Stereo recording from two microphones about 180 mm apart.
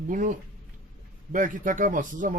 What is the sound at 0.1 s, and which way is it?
Speech, 45° right (ahead or behind).